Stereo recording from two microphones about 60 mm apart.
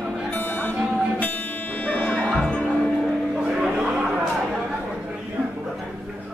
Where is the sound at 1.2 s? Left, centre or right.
Left.